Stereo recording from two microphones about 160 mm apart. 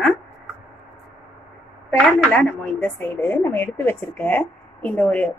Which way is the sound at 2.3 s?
10° left (ahead or behind).